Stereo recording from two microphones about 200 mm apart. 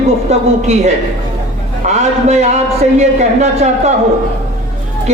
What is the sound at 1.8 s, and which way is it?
A man's voice, 35° right (ahead or behind).